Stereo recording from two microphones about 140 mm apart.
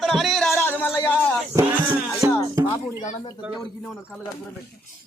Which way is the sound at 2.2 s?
15° right (ahead or behind).